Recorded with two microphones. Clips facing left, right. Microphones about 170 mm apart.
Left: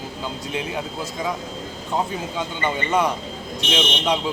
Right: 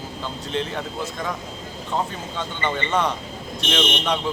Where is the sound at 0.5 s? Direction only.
10° left (ahead or behind).